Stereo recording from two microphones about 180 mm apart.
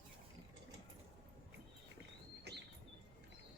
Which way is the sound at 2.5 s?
70° right (ahead or behind).